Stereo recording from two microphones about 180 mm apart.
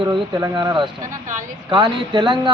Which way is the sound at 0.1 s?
20° right (ahead or behind).